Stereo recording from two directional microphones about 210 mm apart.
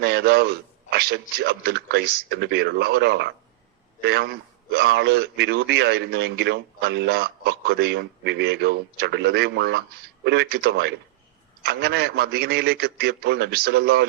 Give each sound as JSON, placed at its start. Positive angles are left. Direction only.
{"t": 0.0, "sound": "a man's voice", "side_deg": -50}